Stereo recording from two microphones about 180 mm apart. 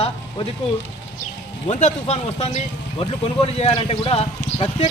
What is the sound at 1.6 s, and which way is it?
Speech, 40° left (ahead or behind).